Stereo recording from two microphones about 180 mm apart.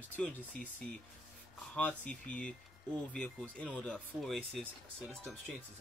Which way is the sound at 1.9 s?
5° left (ahead or behind).